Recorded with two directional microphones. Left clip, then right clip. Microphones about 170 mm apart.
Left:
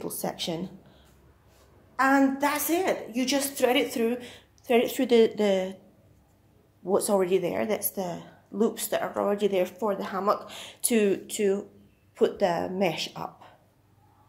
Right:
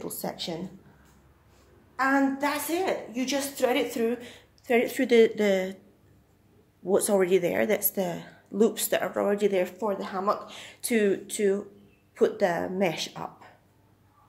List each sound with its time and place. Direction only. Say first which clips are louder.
0.0 s a woman's voice: left 2 dB; 20° left (ahead or behind)
2.0 s a woman's voice: left 2 dB; 35° left (ahead or behind); by 5.8 s 5° right (ahead or behind)
6.8 s a woman's voice: right 1 dB; 10° right (ahead or behind)
9.5 s a woman's voice: even; centre (ahead or behind)
9.8 s a woman's voice: left 1 dB; 15° left (ahead or behind); by 13.5 s centre (ahead or behind)